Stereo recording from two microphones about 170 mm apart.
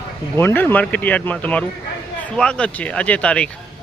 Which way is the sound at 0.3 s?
10° left (ahead or behind).